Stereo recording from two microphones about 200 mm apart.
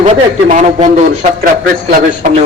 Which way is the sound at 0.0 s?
40° right (ahead or behind).